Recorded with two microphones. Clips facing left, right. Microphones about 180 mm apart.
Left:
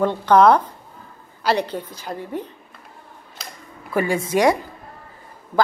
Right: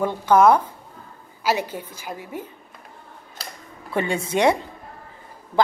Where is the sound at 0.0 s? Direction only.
10° right (ahead or behind).